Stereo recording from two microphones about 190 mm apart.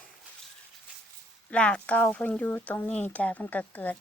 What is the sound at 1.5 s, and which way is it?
Speech, 5° left (ahead or behind).